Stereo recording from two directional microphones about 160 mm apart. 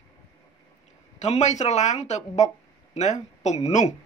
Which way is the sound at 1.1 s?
45° left (ahead or behind).